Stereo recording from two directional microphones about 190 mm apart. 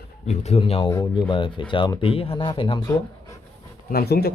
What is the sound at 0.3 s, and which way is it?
Speech, 35° left (ahead or behind).